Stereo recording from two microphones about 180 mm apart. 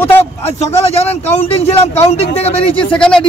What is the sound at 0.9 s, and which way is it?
Speech, 35° left (ahead or behind).